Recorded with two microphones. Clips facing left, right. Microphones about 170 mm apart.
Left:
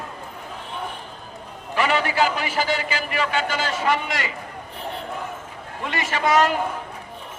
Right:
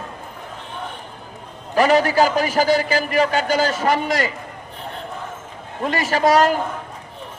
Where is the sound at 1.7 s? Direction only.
40° right (ahead or behind).